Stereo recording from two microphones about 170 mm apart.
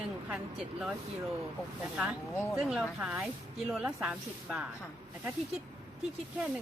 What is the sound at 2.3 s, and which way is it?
Speech, 15° left (ahead or behind).